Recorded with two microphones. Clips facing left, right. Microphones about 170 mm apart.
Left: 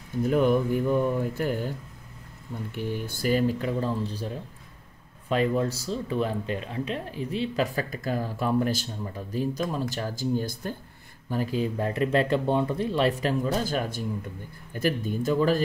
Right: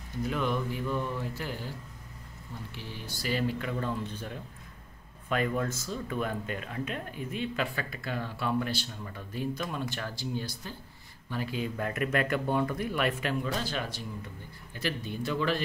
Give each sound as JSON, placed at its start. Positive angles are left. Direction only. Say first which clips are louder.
{"t": 0.2, "sound": "speech", "louder": "left 8 dB", "side_deg": 50}
{"t": 11.7, "sound": "speech", "louder": "left 4 dB", "side_deg": 30}